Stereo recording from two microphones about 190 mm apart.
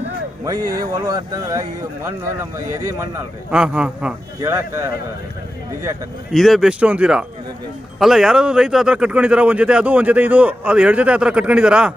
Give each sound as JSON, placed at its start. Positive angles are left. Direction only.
{"t": 0.6, "sound": "speech", "side_deg": -50}
{"t": 0.9, "sound": "speech", "side_deg": -20}
{"t": 3.4, "sound": "a man's voice", "side_deg": -5}
{"t": 6.3, "sound": "a man's voice", "side_deg": 0}